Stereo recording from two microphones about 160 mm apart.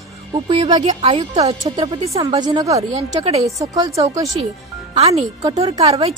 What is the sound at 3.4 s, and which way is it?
Speech, 20° right (ahead or behind).